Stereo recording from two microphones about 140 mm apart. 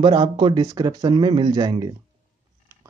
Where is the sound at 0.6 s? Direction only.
25° right (ahead or behind).